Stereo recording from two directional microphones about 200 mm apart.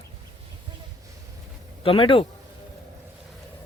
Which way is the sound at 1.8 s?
25° left (ahead or behind).